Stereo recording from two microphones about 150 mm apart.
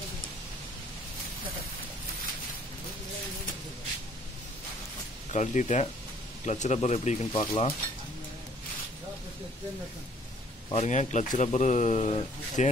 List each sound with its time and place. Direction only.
5.3 s speech: 55° left (ahead or behind)
10.7 s speech: 50° left (ahead or behind)